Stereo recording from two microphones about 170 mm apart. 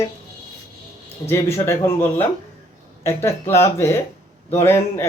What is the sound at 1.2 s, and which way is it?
Speech, 15° left (ahead or behind).